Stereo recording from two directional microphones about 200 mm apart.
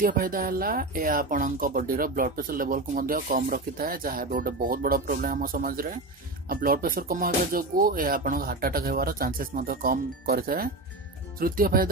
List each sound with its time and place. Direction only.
0.0 s speech: 45° right (ahead or behind)